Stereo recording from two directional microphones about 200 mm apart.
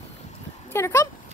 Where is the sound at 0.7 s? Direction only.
15° left (ahead or behind).